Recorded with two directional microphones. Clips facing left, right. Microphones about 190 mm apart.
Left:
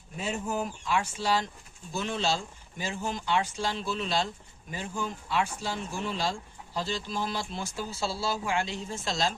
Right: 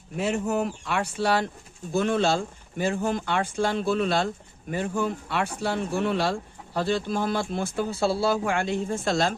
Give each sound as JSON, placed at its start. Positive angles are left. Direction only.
{"t": 0.2, "sound": "speech", "side_deg": -70}